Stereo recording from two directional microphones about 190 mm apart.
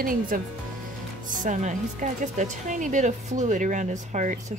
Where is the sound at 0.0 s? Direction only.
50° right (ahead or behind).